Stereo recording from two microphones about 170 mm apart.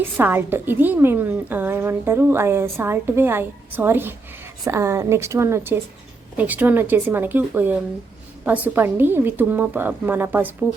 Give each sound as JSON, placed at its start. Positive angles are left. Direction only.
{"t": 0.2, "sound": "a woman's voice", "side_deg": -10}